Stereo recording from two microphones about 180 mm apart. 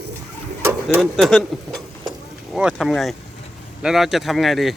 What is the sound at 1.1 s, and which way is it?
Speech, centre (ahead or behind).